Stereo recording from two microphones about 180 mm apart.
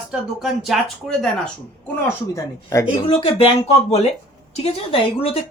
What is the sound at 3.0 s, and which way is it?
Speech, 30° left (ahead or behind).